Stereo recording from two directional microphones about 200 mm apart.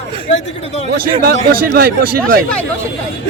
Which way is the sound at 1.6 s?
50° right (ahead or behind).